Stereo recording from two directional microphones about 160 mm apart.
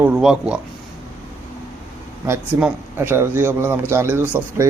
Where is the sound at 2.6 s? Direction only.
15° right (ahead or behind).